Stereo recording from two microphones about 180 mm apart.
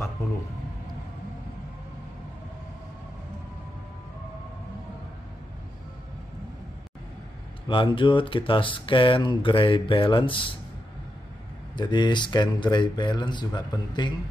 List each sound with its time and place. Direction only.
7.6 s speech: 25° left (ahead or behind)
11.7 s speech: 25° left (ahead or behind)